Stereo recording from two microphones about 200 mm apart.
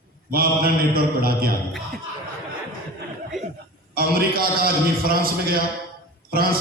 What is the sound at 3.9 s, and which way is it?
A man's voice, 50° right (ahead or behind).